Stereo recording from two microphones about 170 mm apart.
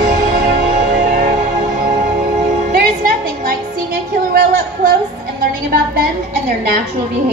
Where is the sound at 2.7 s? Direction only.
60° right (ahead or behind).